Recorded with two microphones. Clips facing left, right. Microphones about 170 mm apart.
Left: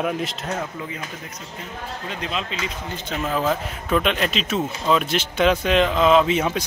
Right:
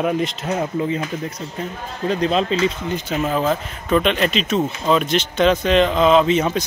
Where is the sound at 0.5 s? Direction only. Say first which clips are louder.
Right 8 dB; 30° right (ahead or behind).